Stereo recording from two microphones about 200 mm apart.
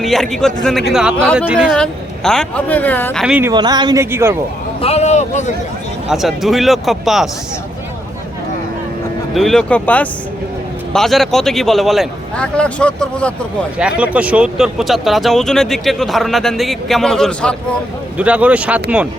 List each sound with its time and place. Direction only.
0.0 s speech: centre (ahead or behind)
3.2 s speech: 5° right (ahead or behind)
3.5 s speech: 20° right (ahead or behind)
4.8 s a sound: 30° left (ahead or behind)
6.1 s speech: centre (ahead or behind)
9.3 s speech: centre (ahead or behind)
13.7 s speech: 5° right (ahead or behind)
18.2 s speech: 5° right (ahead or behind)